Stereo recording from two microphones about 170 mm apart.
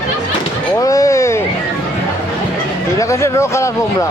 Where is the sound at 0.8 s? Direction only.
20° left (ahead or behind).